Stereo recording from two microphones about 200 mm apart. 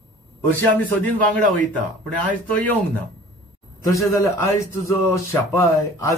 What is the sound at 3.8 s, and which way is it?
A man's voice, 15° left (ahead or behind).